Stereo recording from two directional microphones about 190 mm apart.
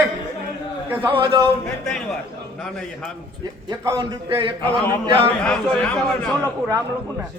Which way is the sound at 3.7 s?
20° right (ahead or behind).